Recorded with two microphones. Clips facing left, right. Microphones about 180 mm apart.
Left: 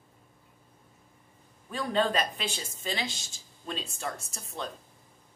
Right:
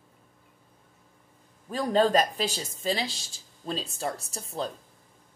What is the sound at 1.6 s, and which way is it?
Speech, 40° right (ahead or behind).